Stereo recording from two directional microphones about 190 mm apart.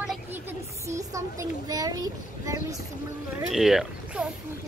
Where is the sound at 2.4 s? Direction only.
20° right (ahead or behind).